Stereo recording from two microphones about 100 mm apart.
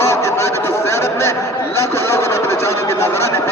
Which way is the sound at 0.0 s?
25° left (ahead or behind).